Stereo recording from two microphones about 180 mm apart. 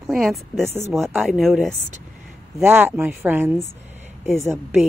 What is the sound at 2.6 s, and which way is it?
Speech, 10° right (ahead or behind).